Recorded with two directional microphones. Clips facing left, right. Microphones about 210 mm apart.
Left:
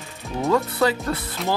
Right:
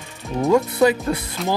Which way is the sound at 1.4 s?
Centre (ahead or behind).